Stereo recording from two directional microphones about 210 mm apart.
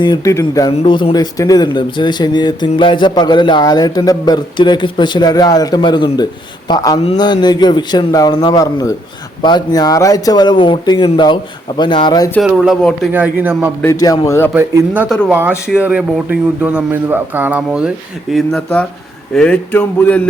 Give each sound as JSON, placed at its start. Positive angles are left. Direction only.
{"t": 0.0, "sound": "speech", "side_deg": 15}
{"t": 0.7, "sound": "speech", "side_deg": 25}
{"t": 12.4, "sound": "speech", "side_deg": 0}
{"t": 13.8, "sound": "speech", "side_deg": 15}
{"t": 14.5, "sound": "speech", "side_deg": -10}